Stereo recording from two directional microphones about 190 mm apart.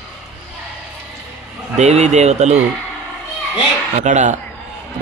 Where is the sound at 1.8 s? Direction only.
35° right (ahead or behind).